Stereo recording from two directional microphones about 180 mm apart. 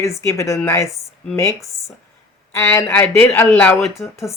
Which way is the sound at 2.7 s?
10° left (ahead or behind).